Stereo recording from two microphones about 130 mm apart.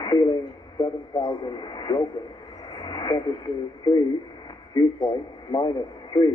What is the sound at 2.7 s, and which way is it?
Radio, 35° left (ahead or behind).